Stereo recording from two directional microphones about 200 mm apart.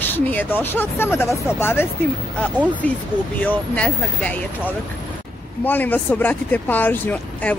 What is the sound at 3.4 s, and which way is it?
Speech, 5° left (ahead or behind).